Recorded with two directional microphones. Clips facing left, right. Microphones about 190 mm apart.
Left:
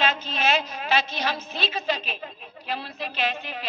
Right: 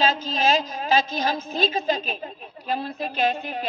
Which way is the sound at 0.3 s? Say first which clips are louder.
Right 3 dB; 40° right (ahead or behind).